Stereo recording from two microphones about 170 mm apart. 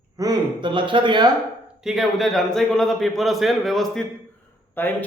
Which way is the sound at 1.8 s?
Centre (ahead or behind).